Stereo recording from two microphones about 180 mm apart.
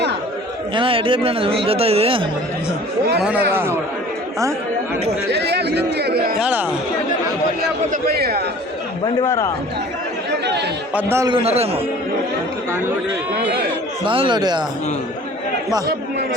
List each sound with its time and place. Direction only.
0.8 s speech: 30° right (ahead or behind)
3.2 s a man's voice: 5° right (ahead or behind)
5.3 s speech: 65° right (ahead or behind)
6.4 s a man's voice: 10° right (ahead or behind)
7.6 s speech: 60° right (ahead or behind)
9.2 s a man's voice: 20° left (ahead or behind)
10.9 s a man's voice: 15° right (ahead or behind)
11.3 s speech: 35° right (ahead or behind)
14.0 s speech: 30° right (ahead or behind)